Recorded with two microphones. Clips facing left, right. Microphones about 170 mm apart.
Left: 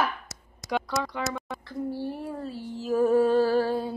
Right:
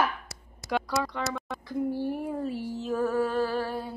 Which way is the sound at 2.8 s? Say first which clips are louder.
Left 6 dB; 5° left (ahead or behind).